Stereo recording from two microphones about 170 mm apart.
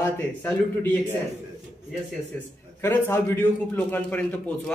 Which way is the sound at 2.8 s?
10° left (ahead or behind).